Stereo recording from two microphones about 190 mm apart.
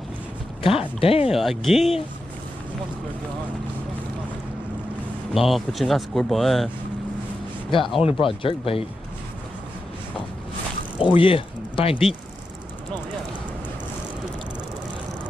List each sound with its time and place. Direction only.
0.7 s speech: 30° left (ahead or behind)
1.3 s speech: centre (ahead or behind)
5.3 s speech: centre (ahead or behind)
8.0 s speech: 30° left (ahead or behind)
11.0 s speech: 30° left (ahead or behind)